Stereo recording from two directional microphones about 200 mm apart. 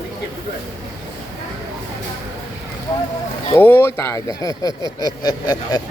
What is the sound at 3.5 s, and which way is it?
Speech, 10° left (ahead or behind).